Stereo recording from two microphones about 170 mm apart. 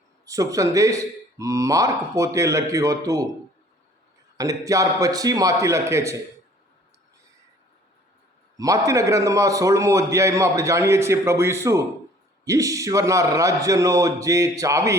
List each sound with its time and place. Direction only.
0.3 s speech: 20° right (ahead or behind)
4.4 s speech: 20° right (ahead or behind)
8.5 s a man's voice: 20° right (ahead or behind)